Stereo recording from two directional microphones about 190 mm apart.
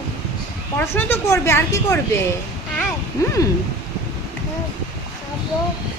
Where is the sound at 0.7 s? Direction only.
10° left (ahead or behind).